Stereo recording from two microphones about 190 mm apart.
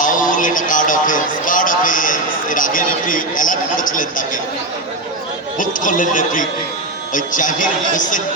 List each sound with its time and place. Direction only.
0.0 s a man's voice: 45° left (ahead or behind)
5.5 s a man's voice: 45° left (ahead or behind)